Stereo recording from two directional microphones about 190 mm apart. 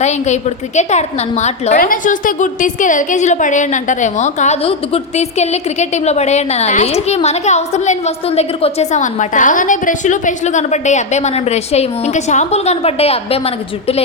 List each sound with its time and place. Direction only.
0.8 s a woman's voice: 35° left (ahead or behind)